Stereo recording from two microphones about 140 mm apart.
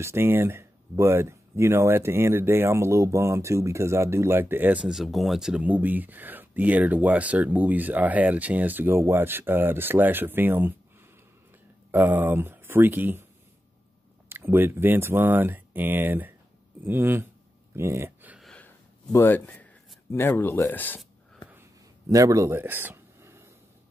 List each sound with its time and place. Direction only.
0.0 s speech: 15° right (ahead or behind)
11.9 s speech: 10° right (ahead or behind)
14.3 s speech: 15° right (ahead or behind)
18.4 s gasp: 5° left (ahead or behind)
19.1 s speech: 15° left (ahead or behind)
22.1 s a man's voice: 25° right (ahead or behind)